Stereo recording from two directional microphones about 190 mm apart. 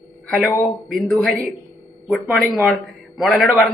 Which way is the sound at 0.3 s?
Centre (ahead or behind).